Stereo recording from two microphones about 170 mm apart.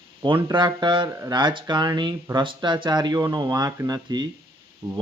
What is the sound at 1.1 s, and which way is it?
A man's voice, 20° right (ahead or behind).